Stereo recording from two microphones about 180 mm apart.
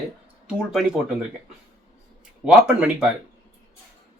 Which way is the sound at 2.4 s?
5° right (ahead or behind).